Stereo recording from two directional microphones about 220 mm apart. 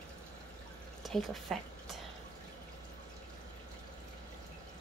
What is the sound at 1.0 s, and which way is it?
Speech, centre (ahead or behind).